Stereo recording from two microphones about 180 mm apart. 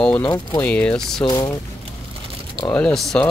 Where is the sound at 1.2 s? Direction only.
25° left (ahead or behind).